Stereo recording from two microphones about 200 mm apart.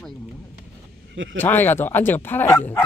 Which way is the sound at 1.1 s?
70° right (ahead or behind).